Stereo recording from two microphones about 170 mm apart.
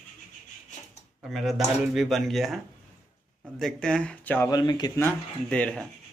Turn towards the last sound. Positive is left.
turn(degrees=5)  # may be behind; listen again after turning